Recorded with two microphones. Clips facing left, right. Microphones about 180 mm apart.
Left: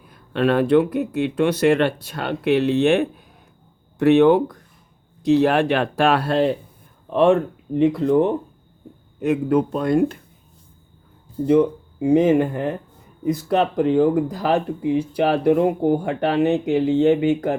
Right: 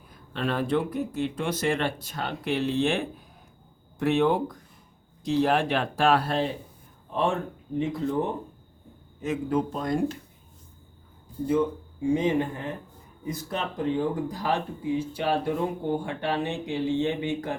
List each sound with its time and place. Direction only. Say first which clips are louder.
0.1 s speech: left 10 dB; 70° left (ahead or behind)
7.1 s speech: left 11 dB; 75° left (ahead or behind)
9.2 s speech: left 8 dB; 60° left (ahead or behind)
11.4 s speech: left 8 dB; 70° left (ahead or behind)